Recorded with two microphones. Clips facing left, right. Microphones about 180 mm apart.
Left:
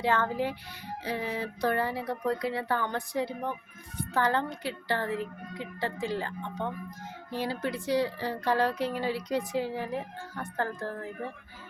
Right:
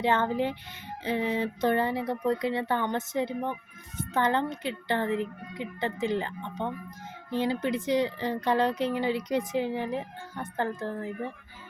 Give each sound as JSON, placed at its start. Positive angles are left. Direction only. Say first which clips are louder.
{"t": 0.0, "sound": "speech", "louder": "right 2 dB", "side_deg": -20}